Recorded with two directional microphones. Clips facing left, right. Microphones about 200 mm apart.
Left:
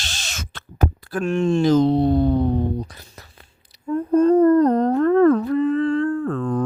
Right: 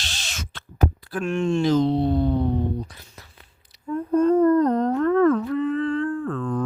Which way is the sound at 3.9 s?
35° left (ahead or behind).